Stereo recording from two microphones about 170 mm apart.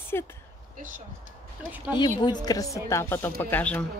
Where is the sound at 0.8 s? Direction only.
50° right (ahead or behind).